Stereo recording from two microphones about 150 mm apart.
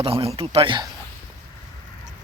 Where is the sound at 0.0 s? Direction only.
40° right (ahead or behind).